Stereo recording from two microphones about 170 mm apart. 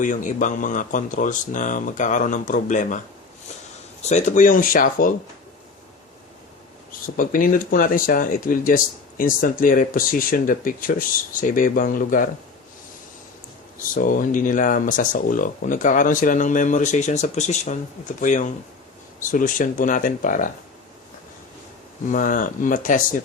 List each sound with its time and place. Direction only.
0.0 s speech: 50° left (ahead or behind)
4.0 s speech: 45° left (ahead or behind)
7.2 s speech: 55° left (ahead or behind)
13.9 s speech: 55° left (ahead or behind)
22.0 s speech: 50° left (ahead or behind)